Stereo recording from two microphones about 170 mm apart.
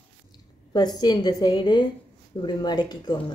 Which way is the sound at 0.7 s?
25° left (ahead or behind).